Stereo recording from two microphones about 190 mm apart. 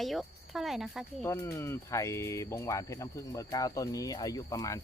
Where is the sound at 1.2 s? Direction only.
15° left (ahead or behind).